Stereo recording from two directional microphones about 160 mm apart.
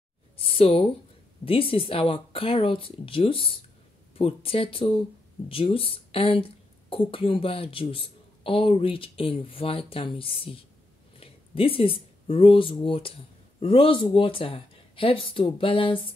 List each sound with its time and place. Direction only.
0.4 s speech: 35° left (ahead or behind)